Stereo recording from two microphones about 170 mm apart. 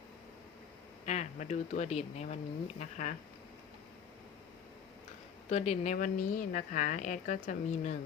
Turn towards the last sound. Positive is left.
turn(degrees=45)  # may be behind; listen again after turning